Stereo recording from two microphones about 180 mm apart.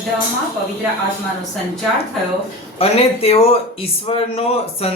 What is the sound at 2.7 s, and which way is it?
Speech, 35° left (ahead or behind).